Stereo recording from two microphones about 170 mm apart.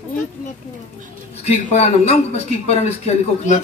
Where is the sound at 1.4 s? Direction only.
40° left (ahead or behind).